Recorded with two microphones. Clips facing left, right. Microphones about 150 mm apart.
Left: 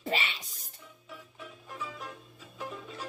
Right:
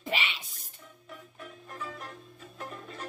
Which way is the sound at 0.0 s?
40° left (ahead or behind).